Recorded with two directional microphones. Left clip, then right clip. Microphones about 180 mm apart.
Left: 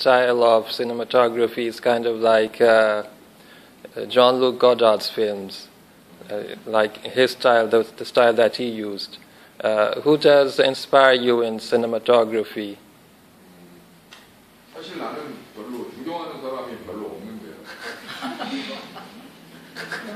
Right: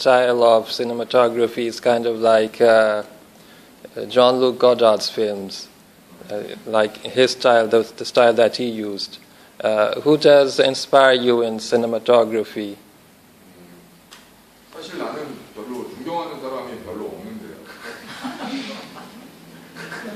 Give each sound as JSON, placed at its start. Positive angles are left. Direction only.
{"t": 0.0, "sound": "speech", "side_deg": -5}